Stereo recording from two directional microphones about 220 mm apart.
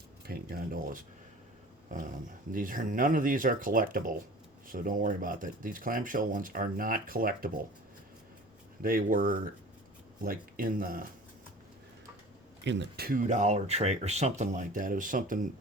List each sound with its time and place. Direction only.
0.3 s speech: 40° right (ahead or behind)
8.8 s speech: 40° right (ahead or behind)
12.6 s speech: 55° right (ahead or behind); by 15.4 s 35° right (ahead or behind)